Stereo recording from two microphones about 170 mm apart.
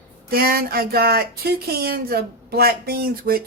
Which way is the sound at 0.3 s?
60° right (ahead or behind).